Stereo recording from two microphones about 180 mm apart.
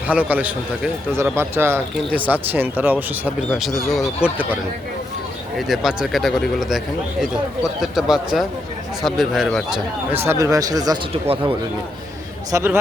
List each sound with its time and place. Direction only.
0.1 s a man's voice: 10° right (ahead or behind)
3.6 s speech: centre (ahead or behind)
5.5 s speech: centre (ahead or behind)
10.2 s speech: 15° right (ahead or behind)
11.1 s speech: 30° right (ahead or behind)
12.5 s a man's voice: 15° right (ahead or behind)